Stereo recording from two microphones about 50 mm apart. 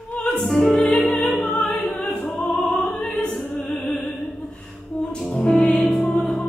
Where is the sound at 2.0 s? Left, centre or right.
Left.